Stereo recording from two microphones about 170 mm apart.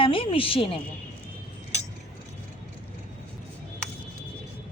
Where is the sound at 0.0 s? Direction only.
30° left (ahead or behind).